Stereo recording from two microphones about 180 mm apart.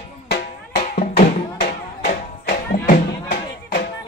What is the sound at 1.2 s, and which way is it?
Music, 60° left (ahead or behind).